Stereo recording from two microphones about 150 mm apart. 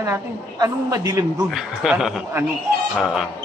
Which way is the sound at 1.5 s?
5° right (ahead or behind).